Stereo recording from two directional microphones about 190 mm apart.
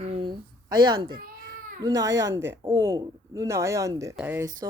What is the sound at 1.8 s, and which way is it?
Speech, 20° right (ahead or behind).